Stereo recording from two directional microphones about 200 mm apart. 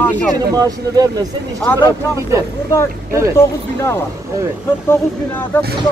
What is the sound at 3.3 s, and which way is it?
A man's voice, 15° left (ahead or behind).